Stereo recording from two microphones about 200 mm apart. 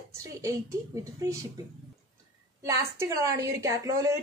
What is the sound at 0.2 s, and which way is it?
A woman's voice, 15° right (ahead or behind).